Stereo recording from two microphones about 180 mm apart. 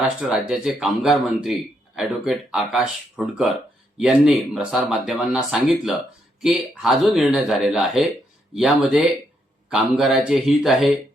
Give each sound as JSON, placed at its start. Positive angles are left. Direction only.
{"t": 0.0, "sound": "speech", "side_deg": -5}
{"t": 4.5, "sound": "speech", "side_deg": -5}